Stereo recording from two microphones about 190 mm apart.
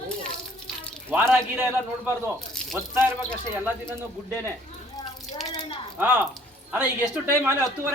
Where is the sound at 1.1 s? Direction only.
10° right (ahead or behind).